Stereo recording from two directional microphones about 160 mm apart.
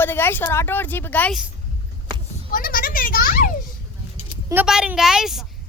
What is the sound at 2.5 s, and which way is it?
Speech, 60° left (ahead or behind).